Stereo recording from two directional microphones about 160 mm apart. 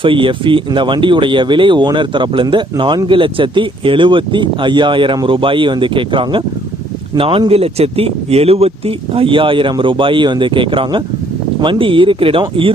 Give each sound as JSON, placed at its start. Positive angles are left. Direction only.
{"t": 0.0, "sound": "speech", "side_deg": -30}